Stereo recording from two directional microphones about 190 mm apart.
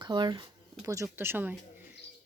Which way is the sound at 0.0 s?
20° right (ahead or behind).